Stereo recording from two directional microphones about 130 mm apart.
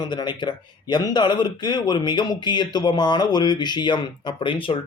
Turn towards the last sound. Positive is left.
turn(degrees=40)  # may be behind; listen again after turning